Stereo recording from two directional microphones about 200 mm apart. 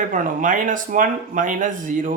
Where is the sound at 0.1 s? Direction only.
40° right (ahead or behind).